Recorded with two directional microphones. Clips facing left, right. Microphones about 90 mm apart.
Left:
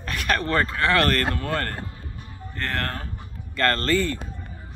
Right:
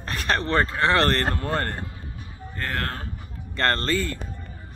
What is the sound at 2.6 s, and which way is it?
Speech, 10° right (ahead or behind).